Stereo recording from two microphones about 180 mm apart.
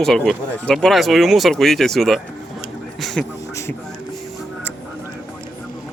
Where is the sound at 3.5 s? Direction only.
15° left (ahead or behind).